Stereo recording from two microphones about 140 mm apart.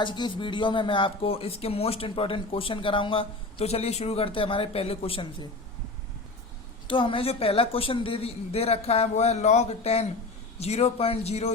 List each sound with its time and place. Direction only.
0.0 s speech: 35° left (ahead or behind)
6.8 s a woman's voice: 35° left (ahead or behind)